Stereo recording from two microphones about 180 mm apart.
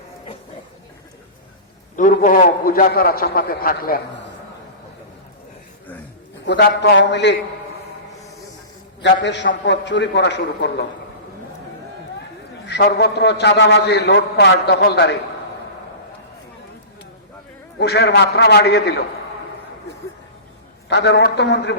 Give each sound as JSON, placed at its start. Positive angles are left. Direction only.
{"t": 2.0, "sound": "a man's voice", "side_deg": 45}
{"t": 6.4, "sound": "a man's voice", "side_deg": 75}
{"t": 9.0, "sound": "a man's voice", "side_deg": 75}
{"t": 12.6, "sound": "a man's voice", "side_deg": 65}
{"t": 17.7, "sound": "a man's voice", "side_deg": 70}
{"t": 20.9, "sound": "a man's voice", "side_deg": 70}